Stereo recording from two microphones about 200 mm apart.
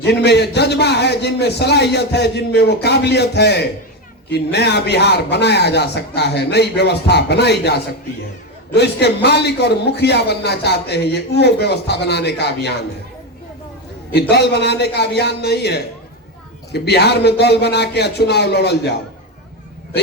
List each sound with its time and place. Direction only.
0.0 s a man's voice: 55° left (ahead or behind)
14.1 s a man's voice: 55° left (ahead or behind)